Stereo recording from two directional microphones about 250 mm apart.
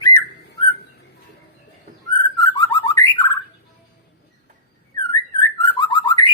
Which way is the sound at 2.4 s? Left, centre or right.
Centre.